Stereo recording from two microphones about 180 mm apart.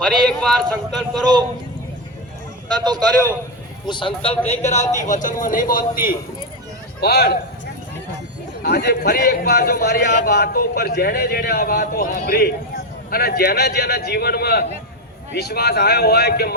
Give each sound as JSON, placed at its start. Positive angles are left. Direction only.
{"t": 0.0, "sound": "speech", "side_deg": 5}
{"t": 2.7, "sound": "a man's voice", "side_deg": -25}
{"t": 3.8, "sound": "a man's voice", "side_deg": 25}
{"t": 8.6, "sound": "a man's voice", "side_deg": 60}